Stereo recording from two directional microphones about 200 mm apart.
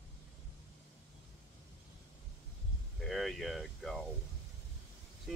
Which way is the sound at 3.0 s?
Centre (ahead or behind).